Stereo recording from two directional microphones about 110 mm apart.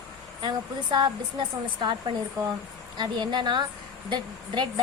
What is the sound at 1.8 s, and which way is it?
A woman's voice, 40° right (ahead or behind).